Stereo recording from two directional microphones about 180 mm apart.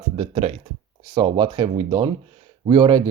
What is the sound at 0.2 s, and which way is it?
Speech, 35° right (ahead or behind).